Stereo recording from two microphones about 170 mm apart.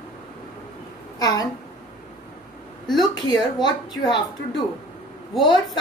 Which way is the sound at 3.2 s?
25° left (ahead or behind).